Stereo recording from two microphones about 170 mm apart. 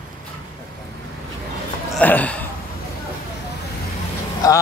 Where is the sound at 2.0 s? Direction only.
10° left (ahead or behind).